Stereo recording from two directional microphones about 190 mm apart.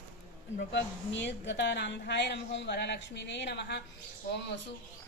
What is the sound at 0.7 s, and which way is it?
Speech, 70° left (ahead or behind).